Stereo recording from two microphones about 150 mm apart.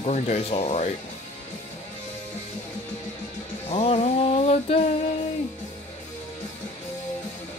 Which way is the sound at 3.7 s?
45° left (ahead or behind).